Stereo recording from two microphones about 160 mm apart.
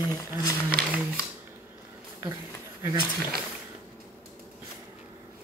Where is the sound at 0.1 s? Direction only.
20° left (ahead or behind).